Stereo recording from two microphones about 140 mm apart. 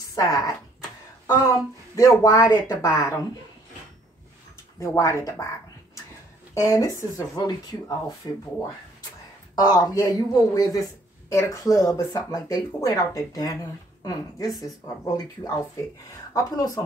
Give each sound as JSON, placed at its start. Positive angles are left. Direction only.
{"t": 0.1, "sound": "speech", "side_deg": 25}
{"t": 4.7, "sound": "speech", "side_deg": 20}
{"t": 6.5, "sound": "speech", "side_deg": 25}
{"t": 9.6, "sound": "speech", "side_deg": 25}